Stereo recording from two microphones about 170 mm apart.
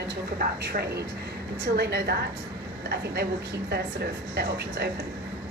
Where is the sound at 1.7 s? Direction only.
85° right.